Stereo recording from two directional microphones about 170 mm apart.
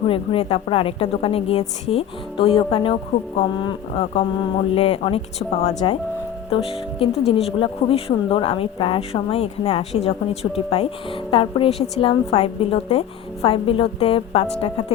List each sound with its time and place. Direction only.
0.1 s speech: 30° left (ahead or behind)